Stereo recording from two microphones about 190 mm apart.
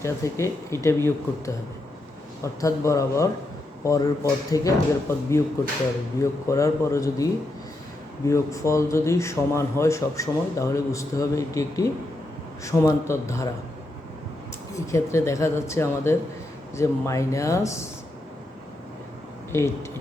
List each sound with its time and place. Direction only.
0.0 s speech: 15° left (ahead or behind)
14.7 s speech: 15° left (ahead or behind)